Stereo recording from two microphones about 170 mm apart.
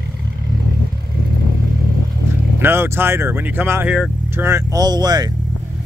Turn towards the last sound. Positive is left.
turn(degrees=-25)  # may be behind; listen again after turning